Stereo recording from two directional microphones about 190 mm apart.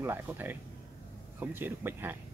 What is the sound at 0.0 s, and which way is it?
Speech, 10° right (ahead or behind).